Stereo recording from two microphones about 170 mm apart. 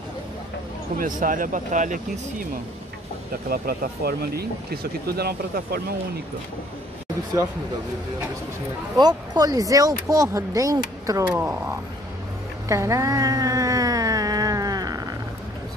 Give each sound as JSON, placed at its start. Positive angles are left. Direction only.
{"t": 0.9, "sound": "speech", "side_deg": -50}
{"t": 3.4, "sound": "speech", "side_deg": -60}
{"t": 8.9, "sound": "speech", "side_deg": -25}
{"t": 12.6, "sound": "a sound", "side_deg": -15}